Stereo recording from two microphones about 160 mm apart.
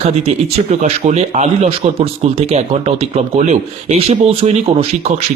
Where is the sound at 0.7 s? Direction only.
45° right (ahead or behind).